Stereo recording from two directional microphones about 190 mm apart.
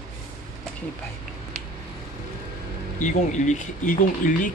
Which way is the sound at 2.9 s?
40° left (ahead or behind).